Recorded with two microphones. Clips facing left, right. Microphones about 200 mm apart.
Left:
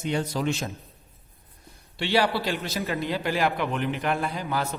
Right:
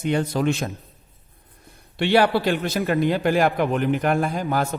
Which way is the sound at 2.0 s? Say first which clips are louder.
Right 6 dB; 55° right (ahead or behind).